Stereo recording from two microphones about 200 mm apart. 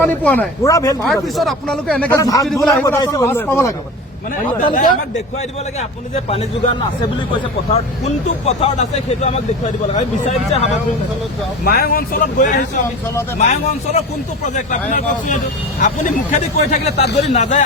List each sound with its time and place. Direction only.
0.0 s speech: 10° left (ahead or behind)
1.0 s a man's voice: centre (ahead or behind); by 2.5 s 15° left (ahead or behind)
2.5 s a man's voice: centre (ahead or behind)
2.8 s speech: 15° left (ahead or behind)
6.2 s a man's voice: 30° left (ahead or behind)
11.6 s speech: 50° left (ahead or behind)